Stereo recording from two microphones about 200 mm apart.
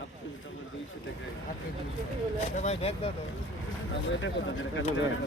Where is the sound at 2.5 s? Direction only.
35° left (ahead or behind).